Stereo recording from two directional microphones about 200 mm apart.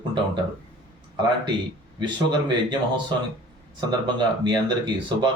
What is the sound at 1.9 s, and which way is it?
Speech, 20° right (ahead or behind).